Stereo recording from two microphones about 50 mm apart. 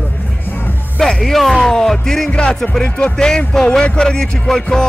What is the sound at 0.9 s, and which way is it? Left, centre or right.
Speech, centre.